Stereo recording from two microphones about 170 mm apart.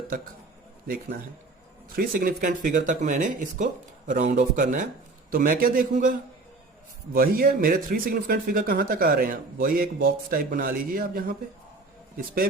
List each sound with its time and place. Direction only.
1.9 s speech: 55° right (ahead or behind)